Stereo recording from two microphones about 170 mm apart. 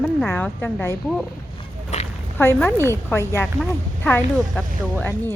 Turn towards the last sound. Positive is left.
turn(degrees=5)  # may be behind; listen again after turning